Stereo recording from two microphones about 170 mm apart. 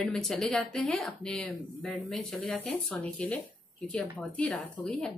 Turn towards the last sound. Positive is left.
turn(degrees=5)  # may be behind; listen again after turning